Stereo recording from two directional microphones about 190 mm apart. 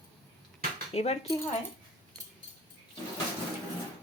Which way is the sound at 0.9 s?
35° left (ahead or behind).